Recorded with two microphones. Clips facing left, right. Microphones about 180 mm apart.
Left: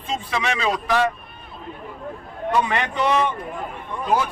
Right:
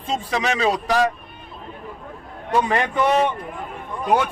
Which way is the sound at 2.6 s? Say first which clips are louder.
Right 2 dB; 45° right (ahead or behind).